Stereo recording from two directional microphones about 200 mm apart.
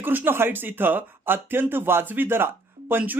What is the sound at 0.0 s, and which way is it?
Speech, 10° right (ahead or behind).